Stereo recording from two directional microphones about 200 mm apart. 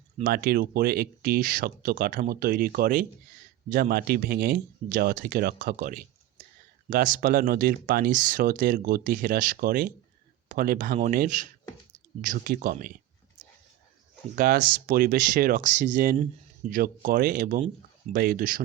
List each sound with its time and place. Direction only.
0.2 s speech: 45° right (ahead or behind)
14.3 s speech: 50° right (ahead or behind)